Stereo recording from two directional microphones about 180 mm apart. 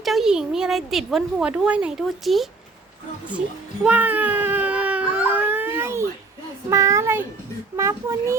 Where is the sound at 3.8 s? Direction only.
10° right (ahead or behind).